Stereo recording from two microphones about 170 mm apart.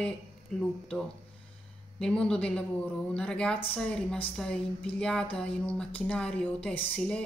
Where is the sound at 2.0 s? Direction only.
5° left (ahead or behind).